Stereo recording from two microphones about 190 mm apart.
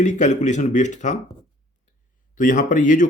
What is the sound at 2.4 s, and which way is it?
Speech, 45° left (ahead or behind).